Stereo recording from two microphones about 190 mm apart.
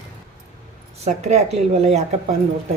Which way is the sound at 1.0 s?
35° right (ahead or behind).